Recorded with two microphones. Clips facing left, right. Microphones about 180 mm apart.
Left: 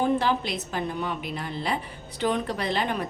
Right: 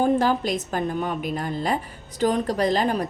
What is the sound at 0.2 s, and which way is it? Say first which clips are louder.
A woman's voice: right 4 dB; 45° right (ahead or behind).